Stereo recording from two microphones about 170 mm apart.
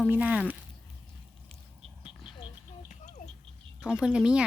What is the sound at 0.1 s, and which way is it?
Speech, 10° right (ahead or behind).